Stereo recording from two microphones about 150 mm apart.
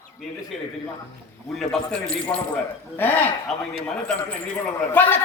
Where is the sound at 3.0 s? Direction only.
15° left (ahead or behind).